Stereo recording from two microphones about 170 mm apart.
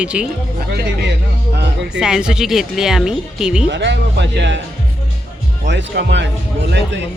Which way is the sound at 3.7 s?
90° right.